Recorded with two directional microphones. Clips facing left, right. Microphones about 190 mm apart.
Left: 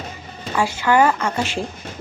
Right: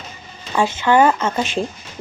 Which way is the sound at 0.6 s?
20° right (ahead or behind).